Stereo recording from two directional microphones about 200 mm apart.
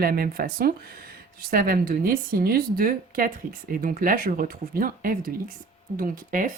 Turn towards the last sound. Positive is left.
turn(degrees=-40)  # may be behind; listen again after turning